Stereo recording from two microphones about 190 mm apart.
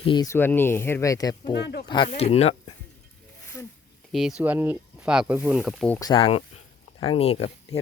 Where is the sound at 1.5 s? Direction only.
60° left (ahead or behind).